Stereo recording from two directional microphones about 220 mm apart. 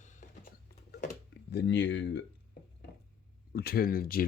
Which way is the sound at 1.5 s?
50° left (ahead or behind).